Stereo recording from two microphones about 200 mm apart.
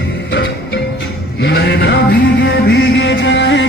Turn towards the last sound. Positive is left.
turn(degrees=65)  # may be behind; listen again after turning